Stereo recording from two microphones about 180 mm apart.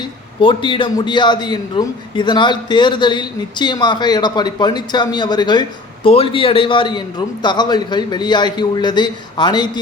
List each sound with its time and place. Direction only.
0.4 s a man's voice: 25° left (ahead or behind)